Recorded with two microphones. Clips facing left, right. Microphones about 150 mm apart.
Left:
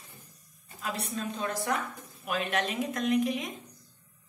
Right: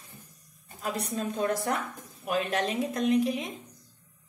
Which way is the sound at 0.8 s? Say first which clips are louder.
Right 3 dB; 40° right (ahead or behind).